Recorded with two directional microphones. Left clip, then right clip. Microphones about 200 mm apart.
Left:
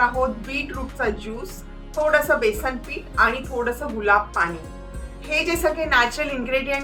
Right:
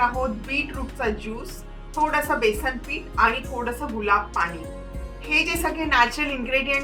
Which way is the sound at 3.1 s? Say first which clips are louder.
Left 2 dB; centre (ahead or behind).